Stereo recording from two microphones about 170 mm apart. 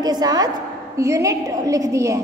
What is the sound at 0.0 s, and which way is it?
A woman's voice, 25° right (ahead or behind).